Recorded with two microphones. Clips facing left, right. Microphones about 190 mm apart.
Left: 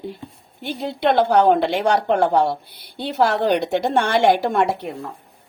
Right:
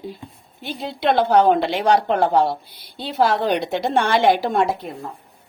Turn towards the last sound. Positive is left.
turn(degrees=70)  # may be behind; listen again after turning